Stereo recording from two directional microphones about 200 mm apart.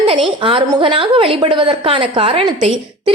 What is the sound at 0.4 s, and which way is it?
A woman's voice, 25° right (ahead or behind).